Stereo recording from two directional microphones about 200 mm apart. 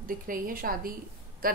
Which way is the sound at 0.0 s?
45° right (ahead or behind).